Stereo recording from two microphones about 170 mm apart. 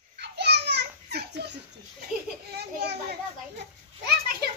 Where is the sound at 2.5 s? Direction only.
70° right (ahead or behind).